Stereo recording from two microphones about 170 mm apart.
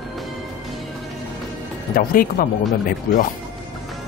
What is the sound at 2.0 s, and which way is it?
Speech, 55° left (ahead or behind).